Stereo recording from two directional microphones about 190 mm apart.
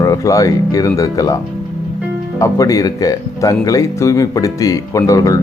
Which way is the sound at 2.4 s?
15° left (ahead or behind).